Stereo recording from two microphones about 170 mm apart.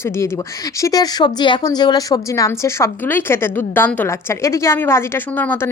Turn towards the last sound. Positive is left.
turn(degrees=10)  # may be behind; listen again after turning